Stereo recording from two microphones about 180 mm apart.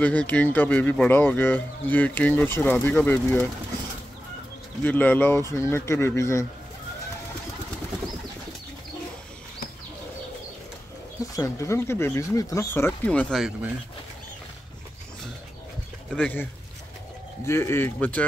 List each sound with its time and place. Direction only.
0.0 s speech: 10° left (ahead or behind)
4.8 s speech: 10° left (ahead or behind)
11.3 s speech: 15° left (ahead or behind)
16.1 s speech: 10° left (ahead or behind)
17.5 s speech: 15° left (ahead or behind)